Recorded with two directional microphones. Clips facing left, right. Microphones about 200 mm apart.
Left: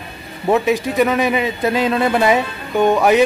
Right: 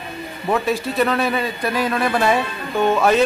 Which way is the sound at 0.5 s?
15° left (ahead or behind).